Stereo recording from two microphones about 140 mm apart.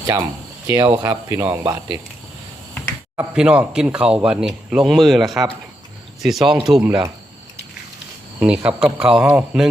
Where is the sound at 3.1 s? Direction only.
10° right (ahead or behind).